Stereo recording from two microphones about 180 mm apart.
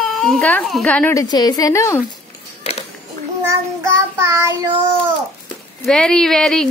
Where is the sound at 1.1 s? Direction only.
20° left (ahead or behind).